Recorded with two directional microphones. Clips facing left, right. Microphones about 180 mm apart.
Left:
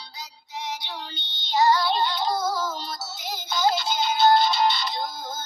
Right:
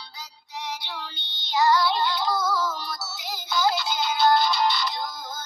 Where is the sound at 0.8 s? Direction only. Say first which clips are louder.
Left 1 dB; 20° left (ahead or behind).